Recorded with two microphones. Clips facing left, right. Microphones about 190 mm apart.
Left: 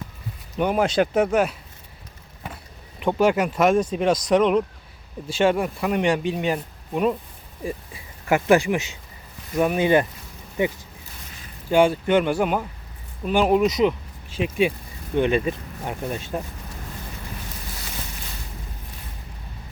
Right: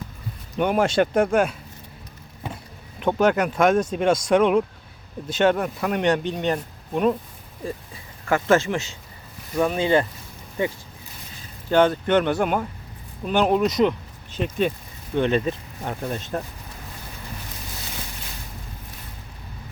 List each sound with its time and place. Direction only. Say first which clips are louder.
0.5 s speech: even; centre (ahead or behind)
3.0 s speech: even; 5° left (ahead or behind)
8.3 s speech: left 2 dB; 15° left (ahead or behind)